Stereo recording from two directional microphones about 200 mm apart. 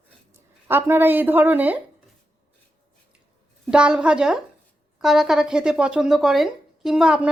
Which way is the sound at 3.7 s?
5° right (ahead or behind).